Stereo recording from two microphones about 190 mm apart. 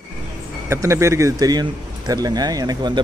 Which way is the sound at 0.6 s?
15° right (ahead or behind).